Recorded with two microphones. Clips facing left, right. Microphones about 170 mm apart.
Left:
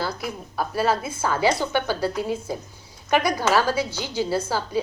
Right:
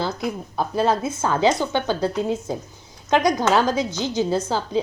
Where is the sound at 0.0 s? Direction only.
20° right (ahead or behind).